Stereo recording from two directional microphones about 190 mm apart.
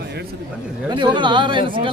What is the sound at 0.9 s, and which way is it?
Speech, 25° right (ahead or behind).